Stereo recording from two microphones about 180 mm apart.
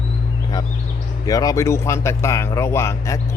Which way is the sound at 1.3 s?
20° left (ahead or behind).